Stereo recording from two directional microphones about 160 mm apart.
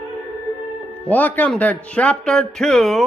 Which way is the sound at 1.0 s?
10° left (ahead or behind).